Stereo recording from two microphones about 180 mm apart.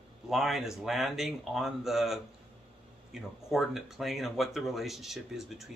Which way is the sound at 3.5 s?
Centre (ahead or behind).